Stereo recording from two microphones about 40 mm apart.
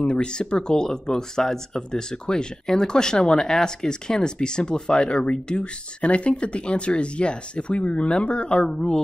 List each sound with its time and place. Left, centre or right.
0.0 s speech: left
8.6 s speech: centre